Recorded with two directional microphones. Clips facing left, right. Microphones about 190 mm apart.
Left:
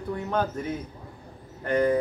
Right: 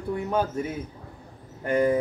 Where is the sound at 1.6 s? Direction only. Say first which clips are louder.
Right 1 dB; 10° right (ahead or behind).